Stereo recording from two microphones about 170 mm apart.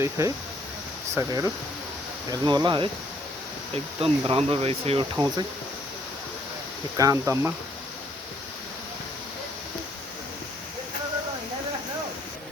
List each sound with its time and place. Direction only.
0.0 s speech: 20° right (ahead or behind)
4.0 s speech: 35° right (ahead or behind)
5.1 s speech: 25° right (ahead or behind)
6.9 s speech: 20° right (ahead or behind)